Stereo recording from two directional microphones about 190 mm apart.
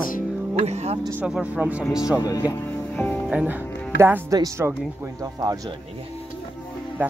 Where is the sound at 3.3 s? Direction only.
10° right (ahead or behind).